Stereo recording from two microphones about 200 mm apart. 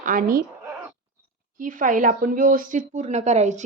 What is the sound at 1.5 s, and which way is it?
Speech, 40° right (ahead or behind).